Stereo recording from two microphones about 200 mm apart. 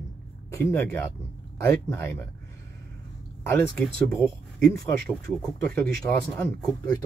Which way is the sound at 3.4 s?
5° left (ahead or behind).